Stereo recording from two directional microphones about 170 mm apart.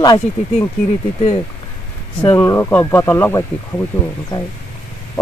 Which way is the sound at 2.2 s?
15° left (ahead or behind).